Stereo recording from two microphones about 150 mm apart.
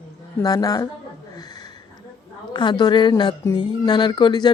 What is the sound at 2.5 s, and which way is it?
Speech, 30° left (ahead or behind).